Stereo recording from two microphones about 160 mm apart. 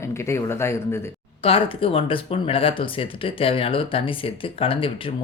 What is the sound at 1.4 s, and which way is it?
Speech, 35° left (ahead or behind).